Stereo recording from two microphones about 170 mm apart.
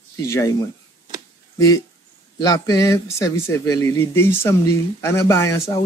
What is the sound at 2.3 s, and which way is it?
Speech, 20° left (ahead or behind).